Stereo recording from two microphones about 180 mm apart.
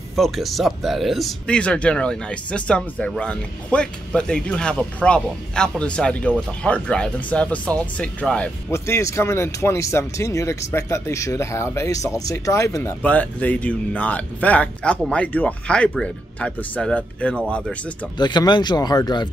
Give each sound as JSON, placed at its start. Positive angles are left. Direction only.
{"t": 0.1, "sound": "speech", "side_deg": 0}
{"t": 18.1, "sound": "speech", "side_deg": 25}